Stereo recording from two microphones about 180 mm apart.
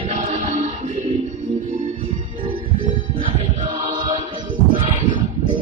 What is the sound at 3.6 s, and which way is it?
Chant, 30° right (ahead or behind).